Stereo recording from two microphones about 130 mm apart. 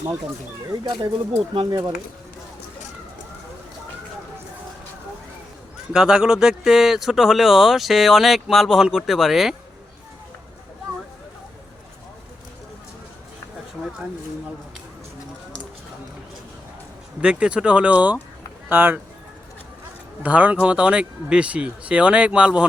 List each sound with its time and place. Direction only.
0.7 s speech: 30° right (ahead or behind)
5.9 s speech: 5° right (ahead or behind)
17.2 s speech: 10° right (ahead or behind)
20.2 s speech: 10° right (ahead or behind)